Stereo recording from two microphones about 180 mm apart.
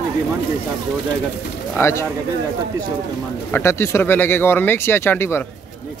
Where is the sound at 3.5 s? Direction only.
15° left (ahead or behind).